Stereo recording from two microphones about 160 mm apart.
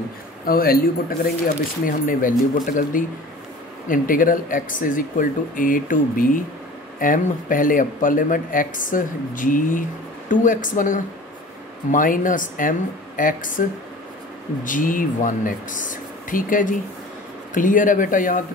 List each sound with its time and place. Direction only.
0.5 s speech: 70° left (ahead or behind)
1.9 s speech: 60° left (ahead or behind)